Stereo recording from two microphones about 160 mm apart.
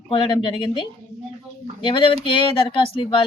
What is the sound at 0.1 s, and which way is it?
Speech, 30° left (ahead or behind).